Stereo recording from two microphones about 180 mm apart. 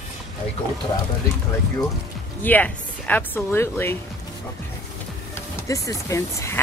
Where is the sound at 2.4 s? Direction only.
10° left (ahead or behind).